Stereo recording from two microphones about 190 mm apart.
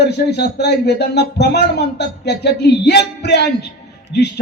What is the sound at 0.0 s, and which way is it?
Speech, 60° left (ahead or behind).